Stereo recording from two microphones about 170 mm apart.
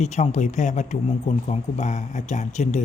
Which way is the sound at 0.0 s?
45° left (ahead or behind).